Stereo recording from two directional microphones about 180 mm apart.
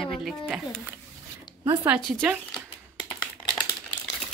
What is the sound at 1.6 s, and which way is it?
Speech, 15° right (ahead or behind).